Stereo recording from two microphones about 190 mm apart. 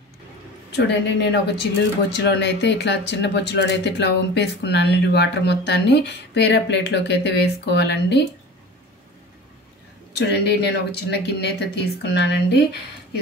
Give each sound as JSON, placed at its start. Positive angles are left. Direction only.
{"t": 0.7, "sound": "speech", "side_deg": 65}
{"t": 10.1, "sound": "speech", "side_deg": 65}